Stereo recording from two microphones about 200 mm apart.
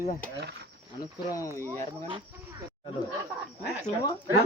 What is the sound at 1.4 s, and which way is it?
Speech, 15° left (ahead or behind).